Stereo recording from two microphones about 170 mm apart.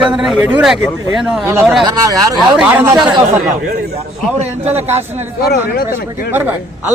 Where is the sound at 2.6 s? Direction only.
10° right (ahead or behind).